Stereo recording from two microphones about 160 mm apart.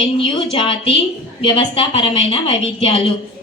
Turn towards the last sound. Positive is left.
turn(degrees=35)  # may be behind; listen again after turning